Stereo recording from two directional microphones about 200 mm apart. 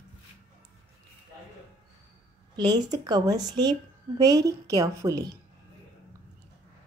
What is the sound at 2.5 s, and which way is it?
A woman's voice, 20° right (ahead or behind).